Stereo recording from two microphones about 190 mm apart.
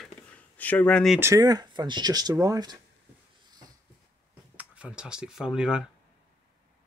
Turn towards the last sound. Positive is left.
turn(degrees=-5)  # may be behind; listen again after turning